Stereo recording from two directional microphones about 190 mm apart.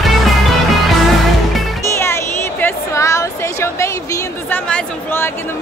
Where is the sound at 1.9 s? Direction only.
15° left (ahead or behind).